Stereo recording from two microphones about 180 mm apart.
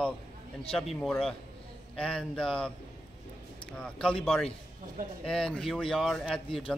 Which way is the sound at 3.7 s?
5° left (ahead or behind).